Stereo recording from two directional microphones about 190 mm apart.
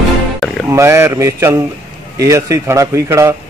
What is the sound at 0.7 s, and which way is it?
A man's voice, 15° right (ahead or behind).